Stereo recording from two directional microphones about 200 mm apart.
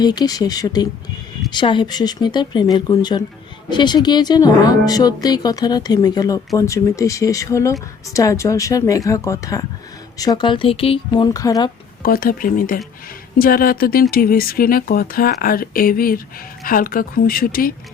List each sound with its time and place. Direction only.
0.0 s speech: 20° left (ahead or behind)
12.0 s speech: 45° left (ahead or behind)